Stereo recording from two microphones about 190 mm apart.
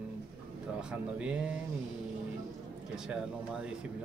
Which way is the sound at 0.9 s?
5° right (ahead or behind).